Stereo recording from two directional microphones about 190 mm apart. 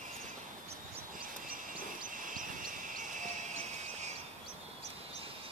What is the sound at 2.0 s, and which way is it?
Basketball bounce, 45° right (ahead or behind).